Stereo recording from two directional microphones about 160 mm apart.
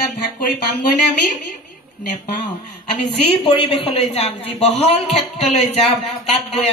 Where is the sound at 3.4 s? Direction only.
40° left (ahead or behind).